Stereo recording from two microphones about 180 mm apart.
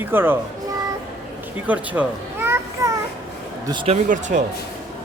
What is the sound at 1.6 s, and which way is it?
Children playing, 10° right (ahead or behind).